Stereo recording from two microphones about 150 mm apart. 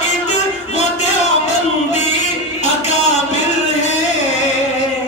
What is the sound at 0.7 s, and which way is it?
Music, 50° left (ahead or behind).